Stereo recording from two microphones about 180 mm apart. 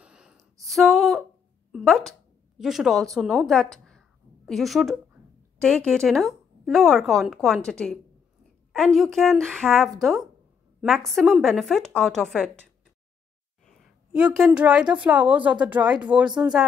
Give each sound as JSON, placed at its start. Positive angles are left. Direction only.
{"t": 0.0, "sound": "a sound", "side_deg": -5}
{"t": 1.7, "sound": "a woman's voice", "side_deg": 0}
{"t": 14.1, "sound": "a woman's voice", "side_deg": -5}